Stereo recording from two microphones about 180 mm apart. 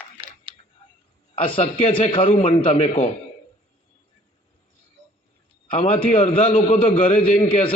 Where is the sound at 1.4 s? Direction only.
30° left (ahead or behind).